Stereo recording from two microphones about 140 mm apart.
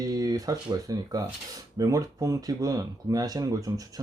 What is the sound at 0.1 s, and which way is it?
Speech, 25° right (ahead or behind).